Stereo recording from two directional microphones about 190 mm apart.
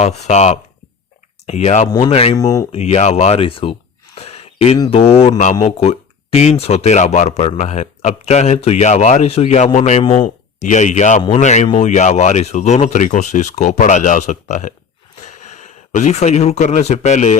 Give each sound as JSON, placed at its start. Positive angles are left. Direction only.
{"t": 0.0, "sound": "speech", "side_deg": 35}
{"t": 2.3, "sound": "speech", "side_deg": 20}
{"t": 2.7, "sound": "speech", "side_deg": 35}